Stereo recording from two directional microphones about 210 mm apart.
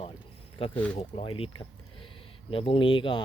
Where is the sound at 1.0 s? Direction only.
30° left (ahead or behind).